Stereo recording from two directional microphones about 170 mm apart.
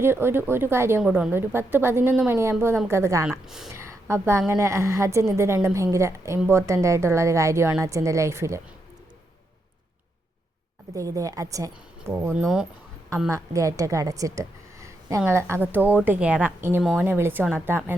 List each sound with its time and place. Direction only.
0.0 s a woman's voice: 15° right (ahead or behind)
3.2 s speech: 5° right (ahead or behind)
3.7 s a woman's voice: 15° right (ahead or behind)
10.9 s a woman's voice: 20° right (ahead or behind)